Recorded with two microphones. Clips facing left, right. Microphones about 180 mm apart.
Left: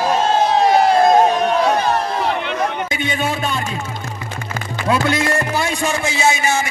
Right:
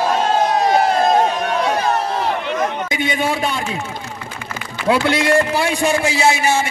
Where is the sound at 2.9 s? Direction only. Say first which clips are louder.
Right 2 dB; 15° right (ahead or behind).